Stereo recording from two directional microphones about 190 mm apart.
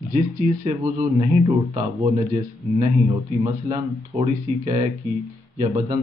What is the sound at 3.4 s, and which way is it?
Speech, 20° right (ahead or behind).